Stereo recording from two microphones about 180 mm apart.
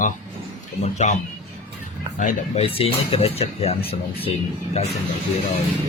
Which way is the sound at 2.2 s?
40° left (ahead or behind).